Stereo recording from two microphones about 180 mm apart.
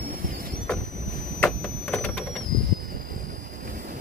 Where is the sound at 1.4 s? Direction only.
5° left (ahead or behind).